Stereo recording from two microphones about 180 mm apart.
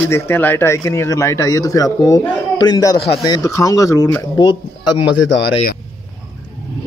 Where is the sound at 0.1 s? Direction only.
10° left (ahead or behind).